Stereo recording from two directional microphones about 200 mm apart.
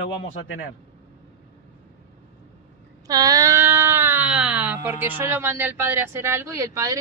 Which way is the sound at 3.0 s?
20° right (ahead or behind).